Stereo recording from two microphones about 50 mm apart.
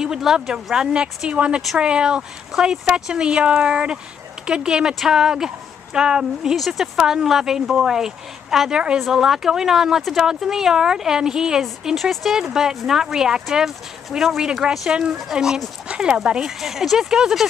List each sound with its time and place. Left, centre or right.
0.0 s speech: centre
1.3 s speech: right
6.5 s speech: centre
7.0 s speech: centre